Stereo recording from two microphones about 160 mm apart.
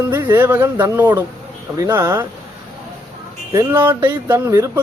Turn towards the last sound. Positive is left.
turn(degrees=-15)  # may be behind; listen again after turning